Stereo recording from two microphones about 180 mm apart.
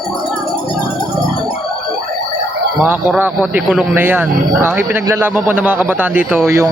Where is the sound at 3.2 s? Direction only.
10° right (ahead or behind).